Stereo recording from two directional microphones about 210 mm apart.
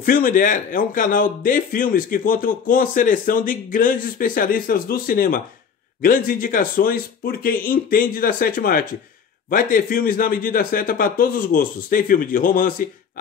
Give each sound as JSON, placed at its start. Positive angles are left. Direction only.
{"t": 0.0, "sound": "speech", "side_deg": 40}